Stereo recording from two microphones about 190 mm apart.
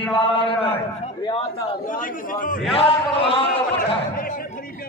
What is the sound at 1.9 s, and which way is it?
Speech, 45° left (ahead or behind).